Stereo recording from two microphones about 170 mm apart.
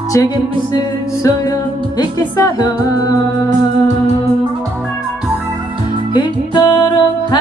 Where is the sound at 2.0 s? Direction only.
25° left (ahead or behind).